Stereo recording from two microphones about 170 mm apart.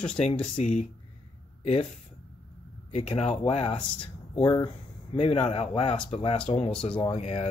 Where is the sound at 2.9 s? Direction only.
35° left (ahead or behind).